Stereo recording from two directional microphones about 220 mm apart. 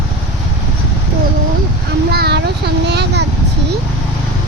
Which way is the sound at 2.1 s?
45° right (ahead or behind).